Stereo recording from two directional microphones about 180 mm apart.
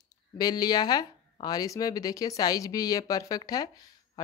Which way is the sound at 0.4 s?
20° left (ahead or behind).